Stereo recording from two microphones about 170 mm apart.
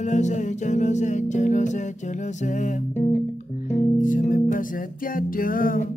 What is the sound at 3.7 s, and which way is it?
Music, 50° left (ahead or behind).